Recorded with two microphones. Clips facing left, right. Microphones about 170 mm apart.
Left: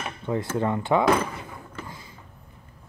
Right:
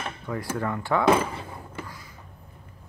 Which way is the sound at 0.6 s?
20° left (ahead or behind).